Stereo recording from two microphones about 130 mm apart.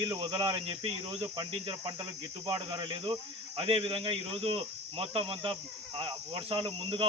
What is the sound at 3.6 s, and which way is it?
Speech, 45° right (ahead or behind).